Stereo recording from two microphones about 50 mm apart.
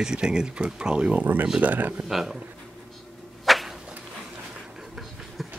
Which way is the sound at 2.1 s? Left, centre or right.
Centre.